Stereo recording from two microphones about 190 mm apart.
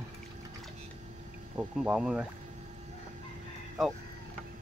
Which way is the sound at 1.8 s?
5° right (ahead or behind).